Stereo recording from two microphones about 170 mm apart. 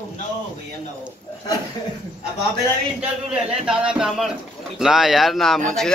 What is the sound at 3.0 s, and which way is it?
Speech, 5° right (ahead or behind).